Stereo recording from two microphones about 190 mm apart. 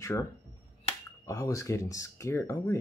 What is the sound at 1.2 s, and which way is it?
Speech, 15° left (ahead or behind).